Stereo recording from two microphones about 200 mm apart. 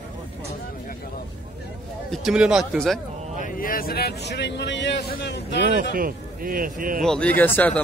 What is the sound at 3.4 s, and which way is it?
Speech, 45° left (ahead or behind).